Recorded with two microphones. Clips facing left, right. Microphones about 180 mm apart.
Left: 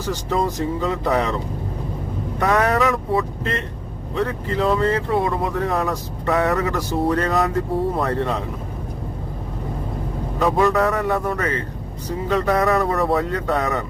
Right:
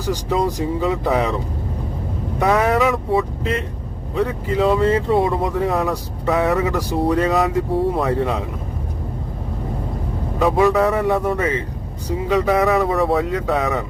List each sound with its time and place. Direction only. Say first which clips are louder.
0.0 s speech: right 3 dB; 15° right (ahead or behind)
0.4 s speech: right 2 dB; centre (ahead or behind)
2.4 s speech: right 2 dB; 5° right (ahead or behind)
10.4 s speech: right 2 dB; centre (ahead or behind)
11.3 s speech: right 3 dB; 20° right (ahead or behind)
12.3 s speech: right 2 dB; 5° right (ahead or behind)